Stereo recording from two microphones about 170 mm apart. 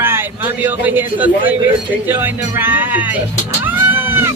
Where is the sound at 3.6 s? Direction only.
10° right (ahead or behind).